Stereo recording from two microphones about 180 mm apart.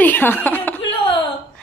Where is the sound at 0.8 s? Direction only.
30° left (ahead or behind).